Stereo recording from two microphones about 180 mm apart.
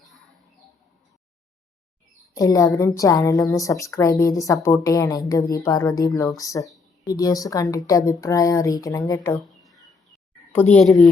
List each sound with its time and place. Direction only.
2.3 s a woman's voice: 20° left (ahead or behind)
10.5 s a woman's voice: 10° left (ahead or behind)